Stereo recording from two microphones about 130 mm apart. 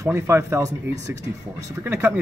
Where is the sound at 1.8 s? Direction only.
15° right (ahead or behind).